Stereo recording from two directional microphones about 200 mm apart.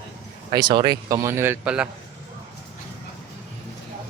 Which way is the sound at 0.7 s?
20° right (ahead or behind).